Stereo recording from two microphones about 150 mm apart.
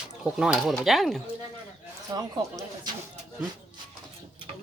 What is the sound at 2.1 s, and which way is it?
Speech, 25° right (ahead or behind).